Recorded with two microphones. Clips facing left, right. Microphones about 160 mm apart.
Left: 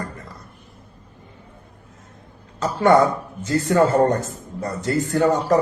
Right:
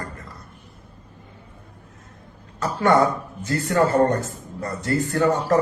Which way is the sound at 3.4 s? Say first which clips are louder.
Left 3 dB; 15° left (ahead or behind).